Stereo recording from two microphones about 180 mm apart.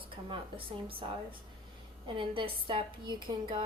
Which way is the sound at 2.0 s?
30° right (ahead or behind).